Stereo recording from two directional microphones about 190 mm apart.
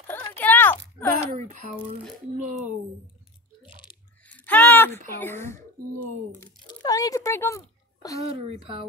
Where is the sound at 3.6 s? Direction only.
25° left (ahead or behind).